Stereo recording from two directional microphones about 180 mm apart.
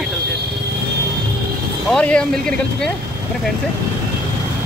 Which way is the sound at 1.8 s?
5° left (ahead or behind).